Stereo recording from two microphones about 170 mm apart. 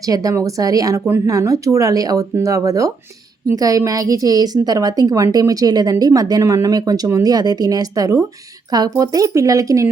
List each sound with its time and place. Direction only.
0.0 s a woman's voice: 20° right (ahead or behind)